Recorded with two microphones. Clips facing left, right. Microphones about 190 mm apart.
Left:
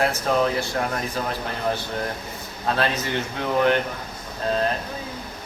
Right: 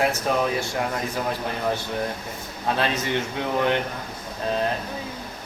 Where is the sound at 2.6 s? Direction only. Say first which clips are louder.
Left 1 dB; 20° right (ahead or behind).